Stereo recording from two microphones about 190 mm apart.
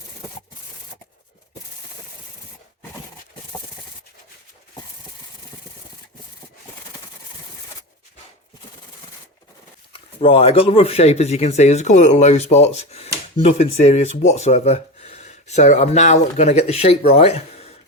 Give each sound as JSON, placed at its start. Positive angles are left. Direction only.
{"t": 9.9, "sound": "speech", "side_deg": 30}